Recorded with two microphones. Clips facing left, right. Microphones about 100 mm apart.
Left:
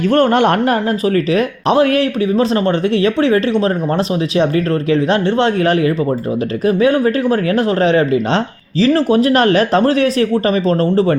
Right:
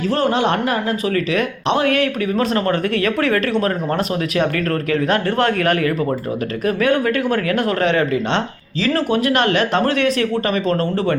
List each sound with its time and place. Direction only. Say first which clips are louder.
0.1 s speech: left 6 dB; 55° left (ahead or behind)
0.6 s speech: left 5 dB; 40° left (ahead or behind)